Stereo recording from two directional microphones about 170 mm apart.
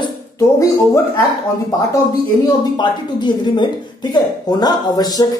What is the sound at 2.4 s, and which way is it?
Speech, 25° left (ahead or behind).